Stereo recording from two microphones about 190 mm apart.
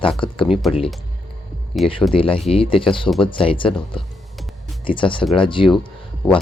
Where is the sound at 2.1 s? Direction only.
30° left (ahead or behind).